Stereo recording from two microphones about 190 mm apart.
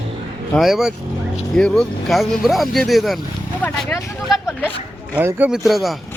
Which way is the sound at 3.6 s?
10° left (ahead or behind).